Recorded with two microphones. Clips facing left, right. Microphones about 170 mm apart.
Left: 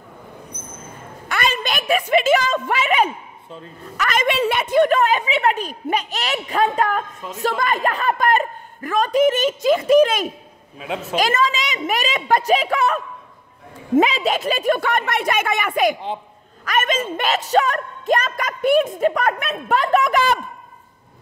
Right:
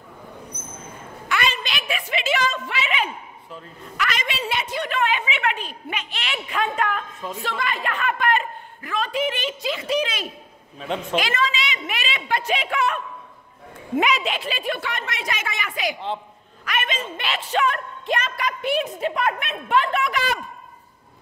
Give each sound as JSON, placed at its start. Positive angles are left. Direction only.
{"t": 1.3, "sound": "a woman's voice", "side_deg": 45}
{"t": 10.8, "sound": "a man's voice", "side_deg": 5}
{"t": 11.1, "sound": "a woman's voice", "side_deg": 45}